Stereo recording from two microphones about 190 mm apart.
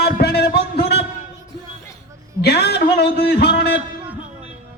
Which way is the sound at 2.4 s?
60° left (ahead or behind).